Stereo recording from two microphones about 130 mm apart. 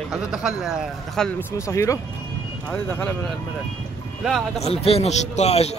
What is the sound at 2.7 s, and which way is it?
Speech, 15° left (ahead or behind).